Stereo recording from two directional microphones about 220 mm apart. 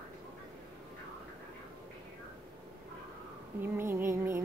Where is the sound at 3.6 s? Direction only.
10° right (ahead or behind).